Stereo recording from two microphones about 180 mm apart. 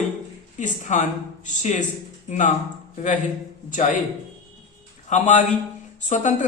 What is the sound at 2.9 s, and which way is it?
A man's voice, 45° left (ahead or behind).